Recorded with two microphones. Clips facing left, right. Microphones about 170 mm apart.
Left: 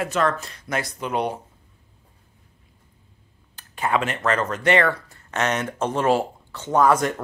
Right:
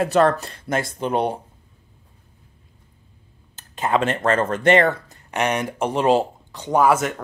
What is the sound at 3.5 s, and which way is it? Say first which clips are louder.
Speech: right 2 dB; 20° right (ahead or behind).